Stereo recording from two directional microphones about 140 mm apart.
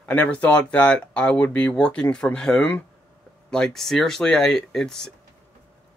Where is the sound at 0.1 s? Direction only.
10° left (ahead or behind).